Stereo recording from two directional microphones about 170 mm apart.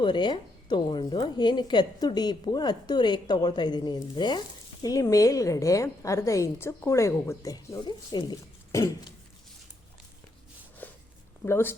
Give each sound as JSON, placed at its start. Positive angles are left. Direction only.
{"t": 0.0, "sound": "a woman's voice", "side_deg": 25}
{"t": 10.8, "sound": "walk", "side_deg": 10}
{"t": 11.4, "sound": "speech", "side_deg": 15}